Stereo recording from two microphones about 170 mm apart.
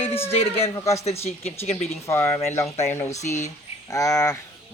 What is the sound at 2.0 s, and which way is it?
Speech, 15° left (ahead or behind).